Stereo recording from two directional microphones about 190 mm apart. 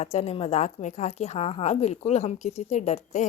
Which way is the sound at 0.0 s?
35° left (ahead or behind).